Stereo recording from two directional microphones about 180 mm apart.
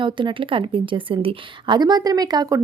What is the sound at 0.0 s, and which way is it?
A woman's voice, 25° right (ahead or behind).